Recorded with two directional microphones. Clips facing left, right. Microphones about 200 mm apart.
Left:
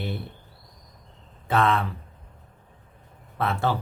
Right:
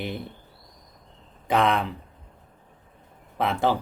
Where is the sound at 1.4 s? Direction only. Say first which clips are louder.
Right 1 dB; 15° right (ahead or behind).